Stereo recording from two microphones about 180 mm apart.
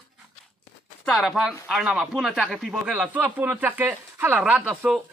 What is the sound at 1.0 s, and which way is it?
Speech, centre (ahead or behind).